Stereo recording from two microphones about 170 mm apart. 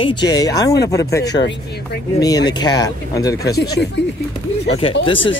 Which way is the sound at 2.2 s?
25° left (ahead or behind).